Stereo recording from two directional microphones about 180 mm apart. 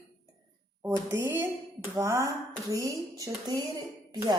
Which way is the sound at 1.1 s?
10° right (ahead or behind).